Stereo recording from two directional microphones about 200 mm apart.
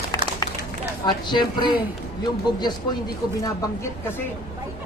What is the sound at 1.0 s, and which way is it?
Speech, 20° left (ahead or behind).